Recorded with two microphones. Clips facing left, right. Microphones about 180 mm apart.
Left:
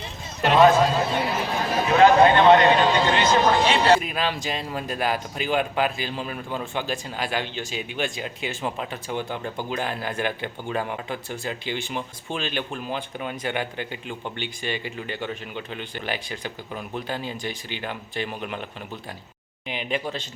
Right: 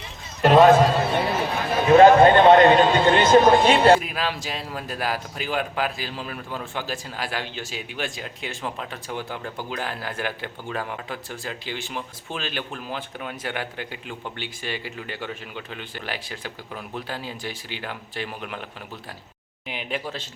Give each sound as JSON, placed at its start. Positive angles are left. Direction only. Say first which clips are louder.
{"t": 0.4, "sound": "a man's voice", "louder": "right 2 dB", "side_deg": -40}
{"t": 0.8, "sound": "a man's voice", "louder": "right 1 dB", "side_deg": -60}
{"t": 1.9, "sound": "a man's voice", "louder": "right 4 dB", "side_deg": -45}
{"t": 4.0, "sound": "speech", "louder": "left 2 dB", "side_deg": -5}
{"t": 19.6, "sound": "speech", "louder": "left 2 dB", "side_deg": -5}